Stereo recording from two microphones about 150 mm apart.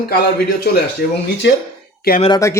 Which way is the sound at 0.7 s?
90° left.